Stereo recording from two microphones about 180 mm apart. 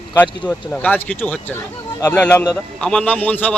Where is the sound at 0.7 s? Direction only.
10° left (ahead or behind).